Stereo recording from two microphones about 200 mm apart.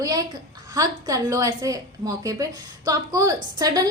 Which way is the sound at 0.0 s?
20° right (ahead or behind).